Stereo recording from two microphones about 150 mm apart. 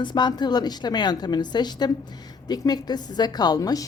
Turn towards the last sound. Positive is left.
turn(degrees=25)  # may be behind; listen again after turning